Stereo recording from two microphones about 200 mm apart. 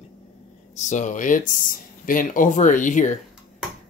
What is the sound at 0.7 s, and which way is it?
Speech, 35° left (ahead or behind).